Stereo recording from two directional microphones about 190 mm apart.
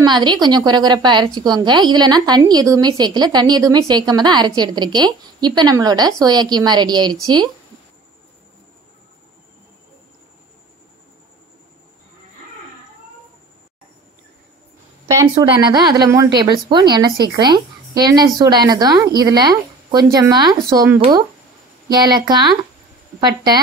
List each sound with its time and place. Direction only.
0.0 s a woman's voice: 20° right (ahead or behind)
15.0 s a woman's voice: 20° right (ahead or behind)